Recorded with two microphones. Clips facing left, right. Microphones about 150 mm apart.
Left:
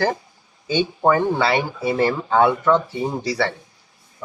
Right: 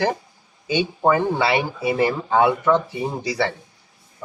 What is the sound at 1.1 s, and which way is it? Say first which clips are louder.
Speech: left 1 dB; 15° right (ahead or behind).